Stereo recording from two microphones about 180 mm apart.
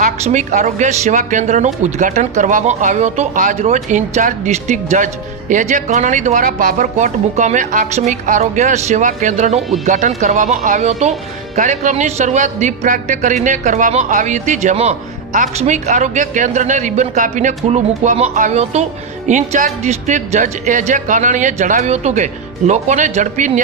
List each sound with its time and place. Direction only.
0.0 s speech: 40° right (ahead or behind)